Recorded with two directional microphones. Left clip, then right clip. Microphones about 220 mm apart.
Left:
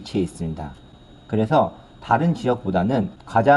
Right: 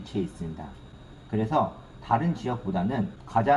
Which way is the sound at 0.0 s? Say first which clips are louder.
Left 7 dB; 45° left (ahead or behind).